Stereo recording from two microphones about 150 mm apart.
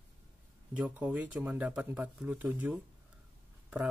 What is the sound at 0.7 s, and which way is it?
Speech, 10° right (ahead or behind).